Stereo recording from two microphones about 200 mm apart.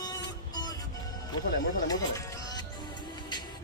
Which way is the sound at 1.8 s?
15° left (ahead or behind).